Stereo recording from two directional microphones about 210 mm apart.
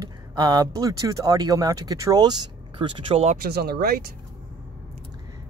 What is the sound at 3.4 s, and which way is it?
Speech, 50° right (ahead or behind).